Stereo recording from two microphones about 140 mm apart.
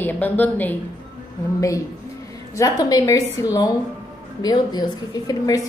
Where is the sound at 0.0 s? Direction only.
10° left (ahead or behind).